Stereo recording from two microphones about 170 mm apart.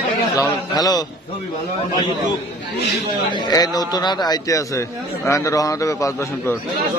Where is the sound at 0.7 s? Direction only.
20° left (ahead or behind).